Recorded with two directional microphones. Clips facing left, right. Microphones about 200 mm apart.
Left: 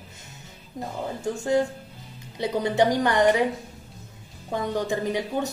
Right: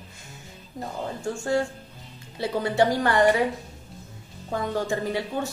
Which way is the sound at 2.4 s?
20° left (ahead or behind).